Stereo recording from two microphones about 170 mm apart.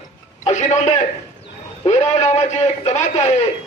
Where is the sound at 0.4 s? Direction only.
40° left (ahead or behind).